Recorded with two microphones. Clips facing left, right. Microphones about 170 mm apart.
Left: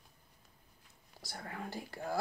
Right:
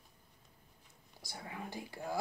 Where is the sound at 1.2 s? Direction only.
15° right (ahead or behind).